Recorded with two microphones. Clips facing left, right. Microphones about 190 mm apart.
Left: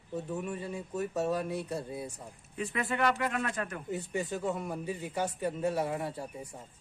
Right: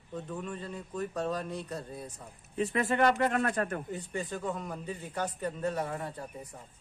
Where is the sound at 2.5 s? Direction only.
35° right (ahead or behind).